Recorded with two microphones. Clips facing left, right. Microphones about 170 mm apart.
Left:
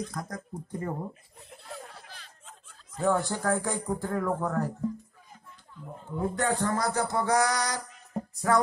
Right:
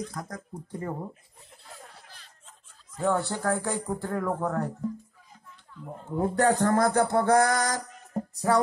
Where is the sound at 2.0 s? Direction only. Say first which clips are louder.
Left 4 dB; 75° left (ahead or behind).